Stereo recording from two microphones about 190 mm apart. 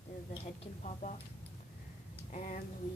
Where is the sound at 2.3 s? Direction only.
40° left (ahead or behind).